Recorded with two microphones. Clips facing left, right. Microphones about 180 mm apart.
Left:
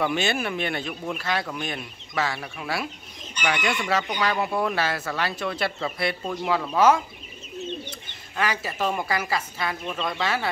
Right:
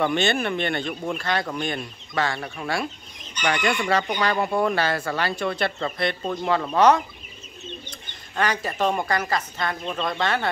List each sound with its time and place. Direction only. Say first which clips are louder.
0.0 s speech: right 3 dB; 5° left (ahead or behind)
8.1 s speech: right 2 dB; 5° left (ahead or behind)